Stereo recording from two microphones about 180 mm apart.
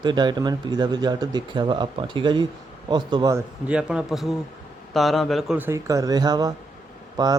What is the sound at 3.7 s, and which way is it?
A man's voice, 5° right (ahead or behind).